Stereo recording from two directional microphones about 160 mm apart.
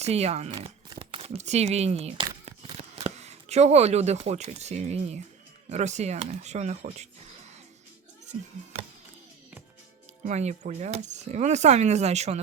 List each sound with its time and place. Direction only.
0.0 s speech: 40° right (ahead or behind)
10.2 s speech: 45° right (ahead or behind)